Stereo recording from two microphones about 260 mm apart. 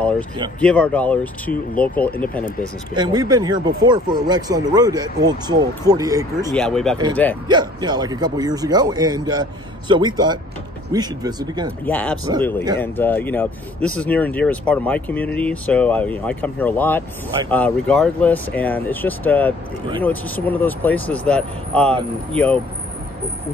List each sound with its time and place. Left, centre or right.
0.6 s speech: centre
2.6 s speech: centre
6.5 s speech: centre
7.4 s speech: centre
11.8 s speech: centre